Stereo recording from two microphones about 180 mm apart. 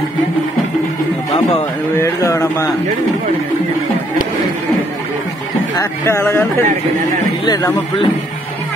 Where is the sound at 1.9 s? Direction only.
15° left (ahead or behind).